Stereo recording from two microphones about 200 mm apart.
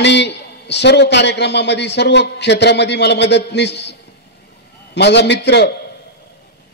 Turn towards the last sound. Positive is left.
turn(degrees=60)  # may be behind; listen again after turning